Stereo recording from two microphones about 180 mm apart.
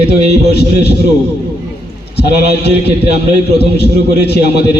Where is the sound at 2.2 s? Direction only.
65° left (ahead or behind).